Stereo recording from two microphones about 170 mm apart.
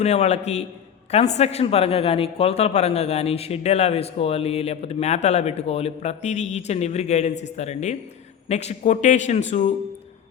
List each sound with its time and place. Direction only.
0.0 s a man's voice: 40° left (ahead or behind)